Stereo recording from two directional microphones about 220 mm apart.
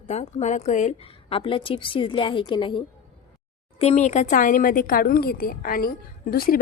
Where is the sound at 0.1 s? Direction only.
30° left (ahead or behind).